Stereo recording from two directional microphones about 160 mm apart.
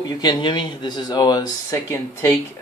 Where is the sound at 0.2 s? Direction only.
30° left (ahead or behind).